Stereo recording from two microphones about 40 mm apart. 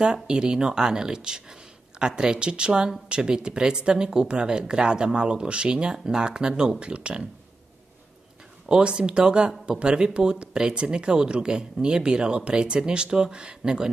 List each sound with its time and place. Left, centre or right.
0.0 s speech: right
8.6 s speech: right